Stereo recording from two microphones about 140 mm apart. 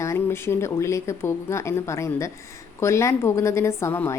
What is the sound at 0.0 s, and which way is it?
Speech, 20° left (ahead or behind).